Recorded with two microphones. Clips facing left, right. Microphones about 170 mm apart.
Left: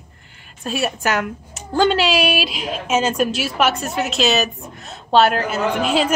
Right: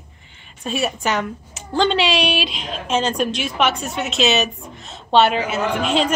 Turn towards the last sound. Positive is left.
turn(degrees=5)  # may be behind; listen again after turning